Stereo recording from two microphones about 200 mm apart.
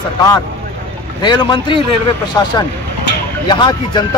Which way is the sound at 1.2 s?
20° left (ahead or behind).